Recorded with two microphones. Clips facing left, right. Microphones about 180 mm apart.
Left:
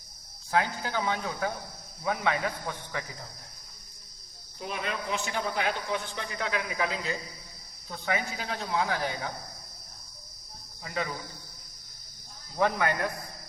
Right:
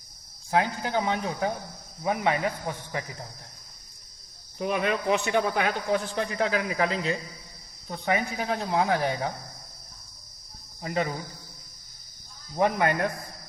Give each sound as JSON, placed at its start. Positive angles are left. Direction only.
{"t": 0.5, "sound": "speech", "side_deg": -25}
{"t": 4.5, "sound": "a man's voice", "side_deg": -60}
{"t": 10.8, "sound": "speech", "side_deg": -30}
{"t": 12.5, "sound": "speech", "side_deg": -20}